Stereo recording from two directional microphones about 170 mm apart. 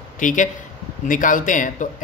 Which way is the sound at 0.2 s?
50° left (ahead or behind).